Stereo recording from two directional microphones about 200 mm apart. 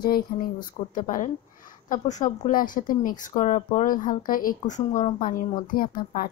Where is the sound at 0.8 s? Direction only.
30° left (ahead or behind).